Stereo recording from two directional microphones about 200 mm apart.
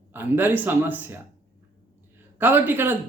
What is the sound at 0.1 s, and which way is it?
Speech, 10° right (ahead or behind).